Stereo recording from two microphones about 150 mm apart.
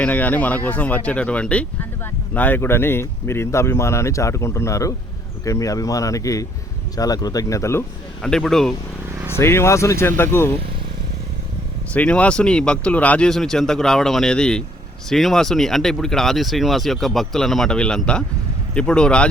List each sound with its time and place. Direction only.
0.0 s speech: 10° left (ahead or behind)
8.2 s speech: 5° left (ahead or behind)
9.3 s speech: 15° left (ahead or behind)
11.9 s speech: 10° left (ahead or behind)